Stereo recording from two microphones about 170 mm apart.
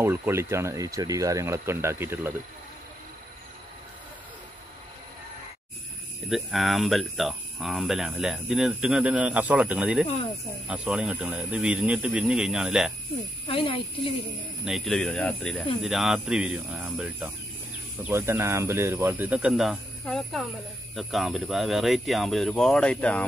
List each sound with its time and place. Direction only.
0.0 s speech: 15° right (ahead or behind)
6.2 s speech: centre (ahead or behind)
13.5 s speech: 30° left (ahead or behind)
14.6 s speech: centre (ahead or behind)